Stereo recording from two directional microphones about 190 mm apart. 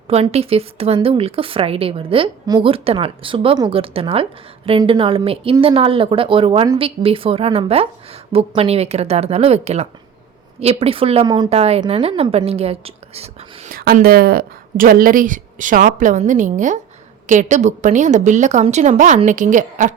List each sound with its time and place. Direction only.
0.1 s a woman's voice: 35° right (ahead or behind)
13.7 s a woman's voice: 50° right (ahead or behind)